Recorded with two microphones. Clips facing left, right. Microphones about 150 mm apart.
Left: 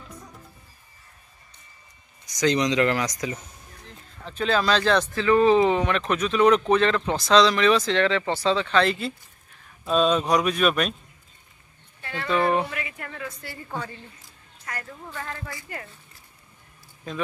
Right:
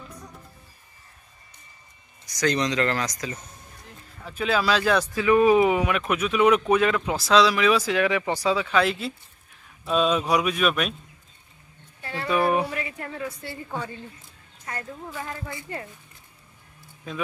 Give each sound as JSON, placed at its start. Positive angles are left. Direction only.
{"t": 2.2, "sound": "speech", "side_deg": 20}
{"t": 4.2, "sound": "speech", "side_deg": -5}
{"t": 12.0, "sound": "a sound", "side_deg": -30}
{"t": 12.3, "sound": "speech", "side_deg": -10}
{"t": 12.6, "sound": "a woman's voice", "side_deg": -35}
{"t": 13.7, "sound": "speech", "side_deg": -10}
{"t": 14.7, "sound": "a woman's voice", "side_deg": -25}
{"t": 15.0, "sound": "speech", "side_deg": -10}
{"t": 15.5, "sound": "a woman's voice", "side_deg": -25}
{"t": 17.1, "sound": "speech", "side_deg": -5}